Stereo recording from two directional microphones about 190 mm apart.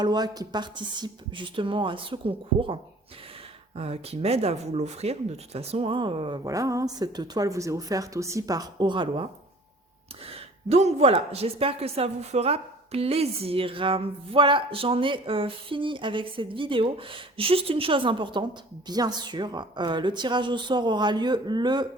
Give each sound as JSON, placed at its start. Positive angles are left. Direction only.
{"t": 0.0, "sound": "speech", "side_deg": -20}
{"t": 3.8, "sound": "speech", "side_deg": -30}
{"t": 10.7, "sound": "speech", "side_deg": -35}